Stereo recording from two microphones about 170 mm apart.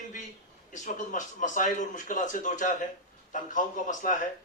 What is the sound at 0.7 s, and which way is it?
A man's voice, 45° left (ahead or behind).